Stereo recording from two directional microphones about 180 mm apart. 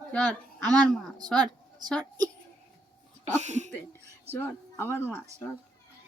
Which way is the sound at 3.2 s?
40° right (ahead or behind).